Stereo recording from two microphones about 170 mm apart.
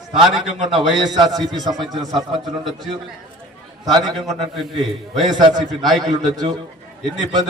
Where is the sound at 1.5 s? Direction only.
25° right (ahead or behind).